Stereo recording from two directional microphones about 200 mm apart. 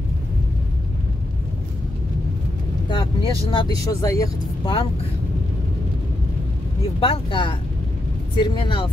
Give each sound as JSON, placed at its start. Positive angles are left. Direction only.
{"t": 2.9, "sound": "speech", "side_deg": 25}
{"t": 7.0, "sound": "speech", "side_deg": 25}